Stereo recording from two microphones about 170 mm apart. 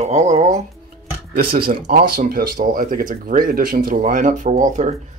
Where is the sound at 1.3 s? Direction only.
60° right (ahead or behind); by 4.9 s 45° right (ahead or behind).